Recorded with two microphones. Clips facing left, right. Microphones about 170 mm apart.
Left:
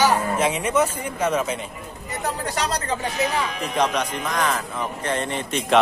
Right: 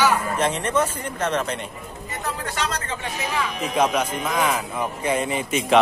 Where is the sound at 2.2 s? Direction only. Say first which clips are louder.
Left 2 dB; 40° left (ahead or behind).